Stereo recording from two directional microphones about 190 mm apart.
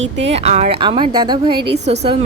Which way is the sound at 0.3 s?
35° right (ahead or behind).